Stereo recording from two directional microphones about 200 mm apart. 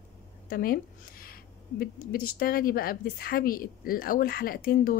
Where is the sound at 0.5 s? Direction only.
45° left (ahead or behind).